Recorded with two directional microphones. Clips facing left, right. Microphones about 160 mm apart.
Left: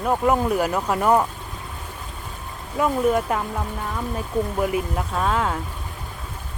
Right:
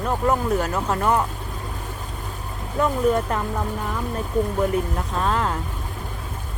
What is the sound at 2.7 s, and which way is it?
Speech, 5° left (ahead or behind).